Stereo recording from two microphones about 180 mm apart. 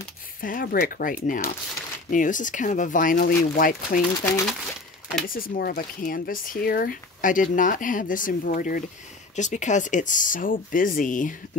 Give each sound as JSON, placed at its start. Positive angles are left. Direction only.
{"t": 0.4, "sound": "speech", "side_deg": 50}
{"t": 5.2, "sound": "speech", "side_deg": 50}